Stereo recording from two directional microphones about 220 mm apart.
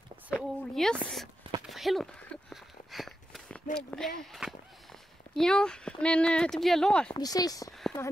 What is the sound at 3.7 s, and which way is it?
Speech, 5° left (ahead or behind).